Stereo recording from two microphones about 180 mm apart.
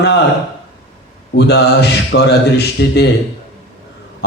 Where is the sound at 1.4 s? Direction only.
65° left (ahead or behind).